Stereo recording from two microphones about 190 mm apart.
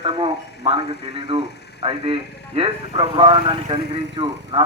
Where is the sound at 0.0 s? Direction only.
30° right (ahead or behind).